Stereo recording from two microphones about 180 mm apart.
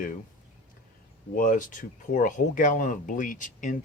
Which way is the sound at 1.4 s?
45° left (ahead or behind).